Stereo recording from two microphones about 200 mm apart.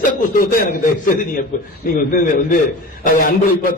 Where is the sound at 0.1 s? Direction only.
45° left (ahead or behind).